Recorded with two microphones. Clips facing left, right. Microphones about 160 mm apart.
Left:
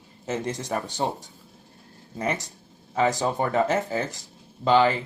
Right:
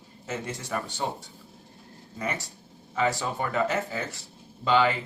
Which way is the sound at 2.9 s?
40° left (ahead or behind).